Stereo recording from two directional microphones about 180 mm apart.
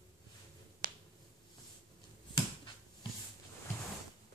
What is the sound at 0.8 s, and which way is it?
Finger snapping, 50° right (ahead or behind).